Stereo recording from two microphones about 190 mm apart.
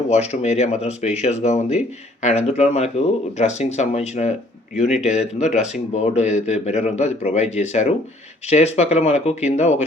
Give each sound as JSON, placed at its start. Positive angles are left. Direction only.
{"t": 0.1, "sound": "speech", "side_deg": 35}